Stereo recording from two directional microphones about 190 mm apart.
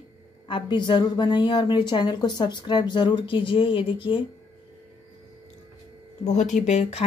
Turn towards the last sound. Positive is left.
turn(degrees=35)  # may be behind; listen again after turning